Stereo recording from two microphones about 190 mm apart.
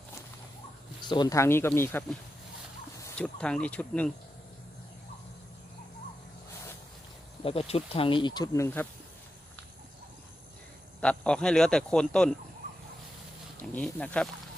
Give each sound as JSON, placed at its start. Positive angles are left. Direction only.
{"t": 1.0, "sound": "speech", "side_deg": 25}
{"t": 7.4, "sound": "speech", "side_deg": 30}
{"t": 11.0, "sound": "a man's voice", "side_deg": 5}
{"t": 13.6, "sound": "speech", "side_deg": 5}